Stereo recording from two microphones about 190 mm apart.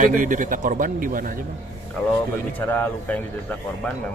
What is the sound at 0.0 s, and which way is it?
A man's voice, 45° right (ahead or behind).